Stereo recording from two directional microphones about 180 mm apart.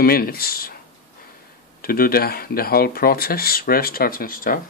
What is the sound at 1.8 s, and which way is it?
Speech, 55° left (ahead or behind).